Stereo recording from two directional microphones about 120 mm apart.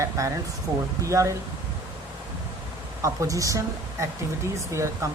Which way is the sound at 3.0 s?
25° right (ahead or behind).